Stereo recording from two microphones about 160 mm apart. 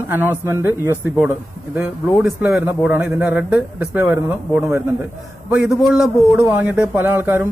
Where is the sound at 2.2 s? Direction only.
5° right (ahead or behind).